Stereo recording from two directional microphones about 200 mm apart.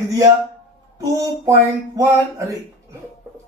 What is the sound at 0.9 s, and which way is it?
Speech, 15° right (ahead or behind).